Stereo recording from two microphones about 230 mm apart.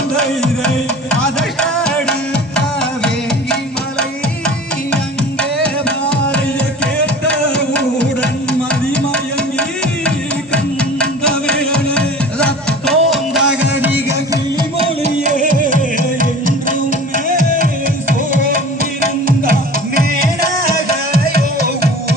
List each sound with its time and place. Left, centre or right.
1.1 s music: centre
5.4 s music: centre
9.1 s music: centre
11.2 s music: centre
15.2 s music: right
20.7 s music: right